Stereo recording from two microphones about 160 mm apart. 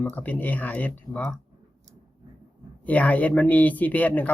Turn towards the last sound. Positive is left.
turn(degrees=10)  # may be behind; listen again after turning